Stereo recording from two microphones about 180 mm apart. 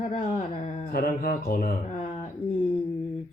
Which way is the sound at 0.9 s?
55° left (ahead or behind).